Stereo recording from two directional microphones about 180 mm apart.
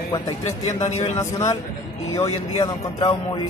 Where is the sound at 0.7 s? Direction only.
35° left (ahead or behind).